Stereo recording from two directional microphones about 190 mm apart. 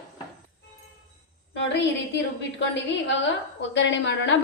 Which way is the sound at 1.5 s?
65° left (ahead or behind).